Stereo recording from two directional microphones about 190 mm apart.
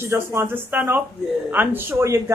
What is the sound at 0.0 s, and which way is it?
Speech, 15° right (ahead or behind).